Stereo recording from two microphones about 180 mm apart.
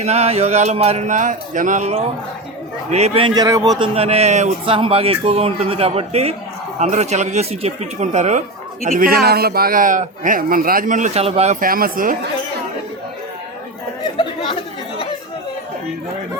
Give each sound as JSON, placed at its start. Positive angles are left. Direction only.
{"t": 0.0, "sound": "a man's voice", "side_deg": -35}
{"t": 11.6, "sound": "speech", "side_deg": -50}